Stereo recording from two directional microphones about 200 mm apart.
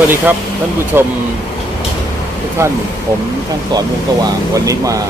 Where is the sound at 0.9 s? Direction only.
10° right (ahead or behind).